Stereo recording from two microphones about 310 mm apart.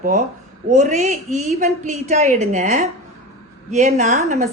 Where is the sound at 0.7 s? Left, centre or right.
Right.